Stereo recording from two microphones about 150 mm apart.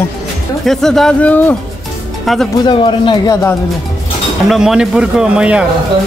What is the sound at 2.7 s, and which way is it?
Speech, 35° left (ahead or behind).